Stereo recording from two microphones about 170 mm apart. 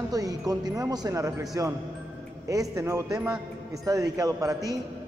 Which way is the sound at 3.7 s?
20° right (ahead or behind).